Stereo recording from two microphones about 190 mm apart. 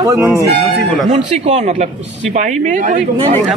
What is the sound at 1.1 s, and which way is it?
Speech, 35° right (ahead or behind).